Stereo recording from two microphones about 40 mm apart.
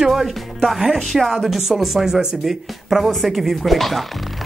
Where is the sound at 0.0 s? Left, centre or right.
Centre.